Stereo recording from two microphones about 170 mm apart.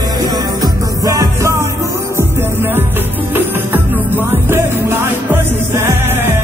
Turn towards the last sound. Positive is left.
turn(degrees=-15)  # may be behind; listen again after turning